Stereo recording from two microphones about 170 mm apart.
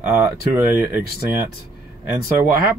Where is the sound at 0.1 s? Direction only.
15° right (ahead or behind).